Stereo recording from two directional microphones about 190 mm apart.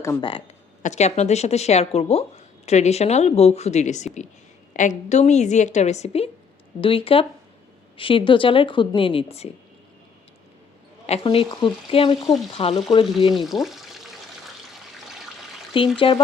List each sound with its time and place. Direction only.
0.0 s speech: 15° left (ahead or behind)
0.3 s speech: 30° left (ahead or behind)
11.0 s speech: 30° left (ahead or behind)
13.3 s water: centre (ahead or behind)
16.0 s speech: 30° left (ahead or behind)